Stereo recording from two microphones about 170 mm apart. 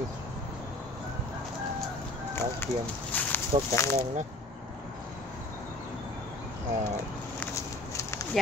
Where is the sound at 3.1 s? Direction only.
10° left (ahead or behind).